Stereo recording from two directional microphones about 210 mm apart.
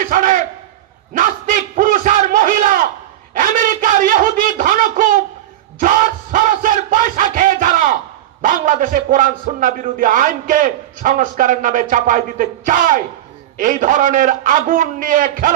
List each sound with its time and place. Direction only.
0.0 s battle cry: 40° right (ahead or behind)
1.1 s a sound: 40° right (ahead or behind)
8.4 s a man's voice: 40° right (ahead or behind)